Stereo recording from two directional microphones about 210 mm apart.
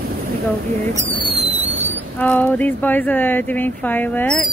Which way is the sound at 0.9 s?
15° right (ahead or behind).